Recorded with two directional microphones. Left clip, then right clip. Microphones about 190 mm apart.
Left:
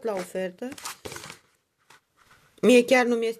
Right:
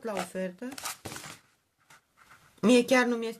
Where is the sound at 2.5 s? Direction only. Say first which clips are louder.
Left 5 dB; 30° left (ahead or behind).